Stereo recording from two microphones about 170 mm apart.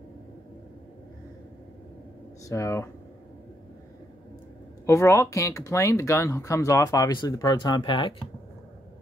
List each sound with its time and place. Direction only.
2.4 s speech: 15° left (ahead or behind)
4.8 s speech: 15° left (ahead or behind)